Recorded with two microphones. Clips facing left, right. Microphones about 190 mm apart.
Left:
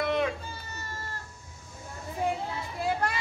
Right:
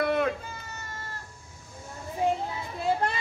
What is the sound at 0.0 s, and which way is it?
Children playing, 50° right (ahead or behind).